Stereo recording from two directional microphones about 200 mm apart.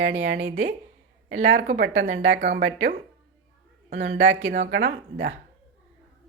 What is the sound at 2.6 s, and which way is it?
Speech, 60° right (ahead or behind).